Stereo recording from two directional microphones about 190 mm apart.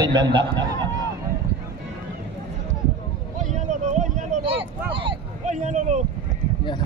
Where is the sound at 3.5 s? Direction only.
40° right (ahead or behind).